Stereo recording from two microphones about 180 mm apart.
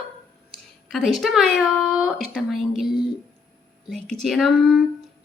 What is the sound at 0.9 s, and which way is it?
Speech, centre (ahead or behind).